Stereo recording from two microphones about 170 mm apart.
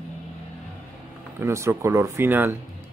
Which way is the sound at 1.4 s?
15° right (ahead or behind).